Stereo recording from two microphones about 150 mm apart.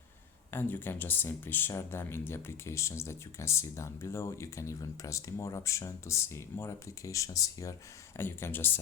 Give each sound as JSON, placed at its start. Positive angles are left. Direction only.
{"t": 0.5, "sound": "speech", "side_deg": 15}